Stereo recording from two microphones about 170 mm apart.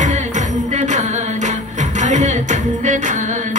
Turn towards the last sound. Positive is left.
turn(degrees=-45)  # may be behind; listen again after turning